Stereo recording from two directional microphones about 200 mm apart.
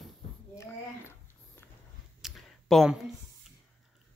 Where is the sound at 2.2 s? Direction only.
Centre (ahead or behind).